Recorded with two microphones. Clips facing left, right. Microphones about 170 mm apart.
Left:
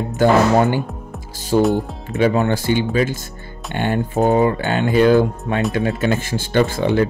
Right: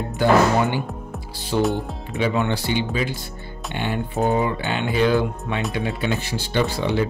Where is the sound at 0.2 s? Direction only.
45° left (ahead or behind).